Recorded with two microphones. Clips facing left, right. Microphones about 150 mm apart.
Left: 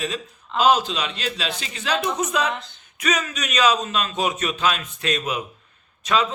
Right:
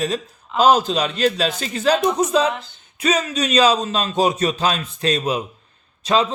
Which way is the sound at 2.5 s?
Centre (ahead or behind).